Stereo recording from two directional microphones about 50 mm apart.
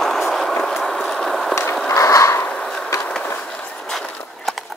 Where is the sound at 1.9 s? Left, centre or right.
Left.